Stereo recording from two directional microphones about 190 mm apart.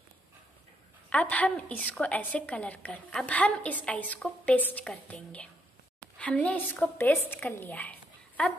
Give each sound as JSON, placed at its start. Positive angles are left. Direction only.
{"t": 1.1, "sound": "a woman's voice", "side_deg": 5}